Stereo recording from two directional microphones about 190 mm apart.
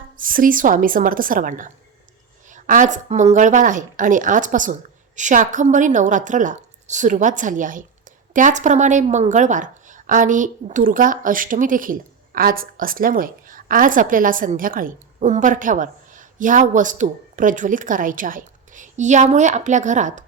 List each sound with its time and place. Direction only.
0.2 s a woman's voice: 45° right (ahead or behind)